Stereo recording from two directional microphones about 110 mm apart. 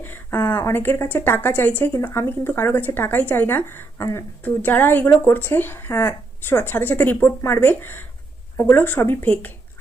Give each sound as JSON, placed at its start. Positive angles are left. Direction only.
{"t": 0.0, "sound": "a woman's voice", "side_deg": 20}